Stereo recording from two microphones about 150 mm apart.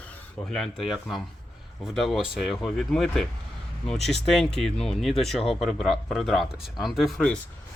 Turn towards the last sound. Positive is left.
turn(degrees=5)  # may be behind; listen again after turning